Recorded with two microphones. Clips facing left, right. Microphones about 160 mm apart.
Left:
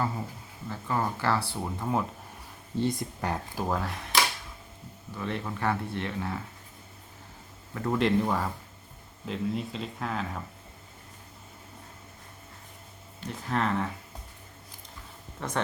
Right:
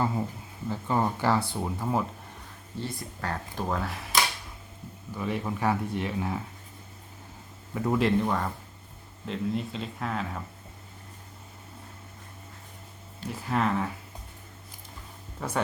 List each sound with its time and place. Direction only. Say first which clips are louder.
0.7 s speech: right 3 dB; 20° right (ahead or behind)
1.6 s speech: right 1 dB; 5° right (ahead or behind)
2.8 s speech: left 5 dB; 15° left (ahead or behind)
3.6 s speech: right 1 dB; centre (ahead or behind)
5.1 s speech: right 3 dB; 10° right (ahead or behind)
7.7 s speech: right 1 dB; 10° right (ahead or behind)
13.2 s speech: right 2 dB; 5° right (ahead or behind)
15.4 s speech: right 1 dB; 5° right (ahead or behind)